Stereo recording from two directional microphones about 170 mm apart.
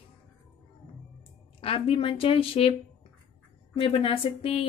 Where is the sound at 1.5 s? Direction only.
35° left (ahead or behind).